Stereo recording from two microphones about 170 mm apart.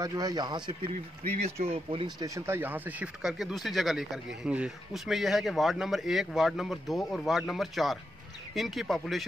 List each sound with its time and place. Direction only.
0.0 s a man's voice: 20° right (ahead or behind); by 9.2 s centre (ahead or behind)